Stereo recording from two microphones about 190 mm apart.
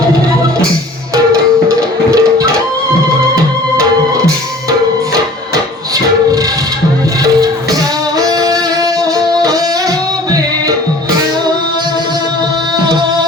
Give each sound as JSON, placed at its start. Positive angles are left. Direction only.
{"t": 1.6, "sound": "music", "side_deg": -15}
{"t": 8.3, "sound": "music", "side_deg": -20}
{"t": 12.8, "sound": "music", "side_deg": -25}